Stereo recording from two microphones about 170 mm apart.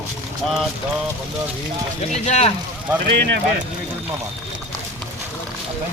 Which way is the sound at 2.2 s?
40° left (ahead or behind).